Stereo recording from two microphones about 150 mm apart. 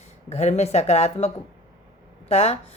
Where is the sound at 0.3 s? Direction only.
50° left (ahead or behind).